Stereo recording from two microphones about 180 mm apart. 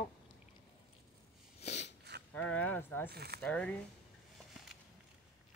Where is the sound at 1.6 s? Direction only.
40° left (ahead or behind).